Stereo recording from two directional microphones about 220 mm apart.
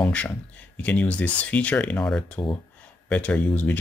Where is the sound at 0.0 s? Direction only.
5° left (ahead or behind).